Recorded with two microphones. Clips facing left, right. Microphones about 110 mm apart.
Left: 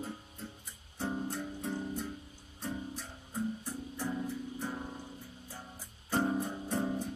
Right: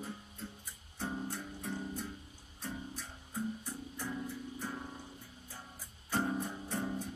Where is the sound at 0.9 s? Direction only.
15° left (ahead or behind).